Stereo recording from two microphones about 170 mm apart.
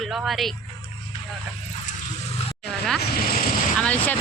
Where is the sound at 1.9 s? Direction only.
45° left (ahead or behind).